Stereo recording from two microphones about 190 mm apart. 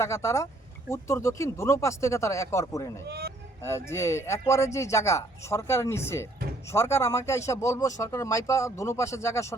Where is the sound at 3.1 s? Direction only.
60° right (ahead or behind).